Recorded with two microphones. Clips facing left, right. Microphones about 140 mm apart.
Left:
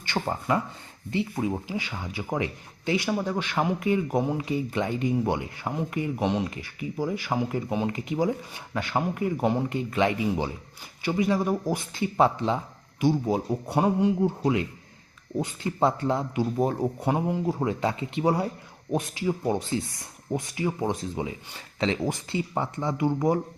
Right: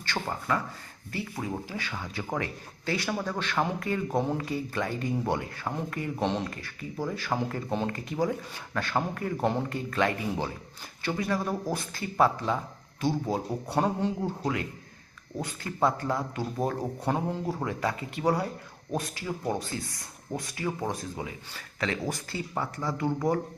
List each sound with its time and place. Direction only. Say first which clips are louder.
0.0 s speech: left 4 dB; 20° left (ahead or behind)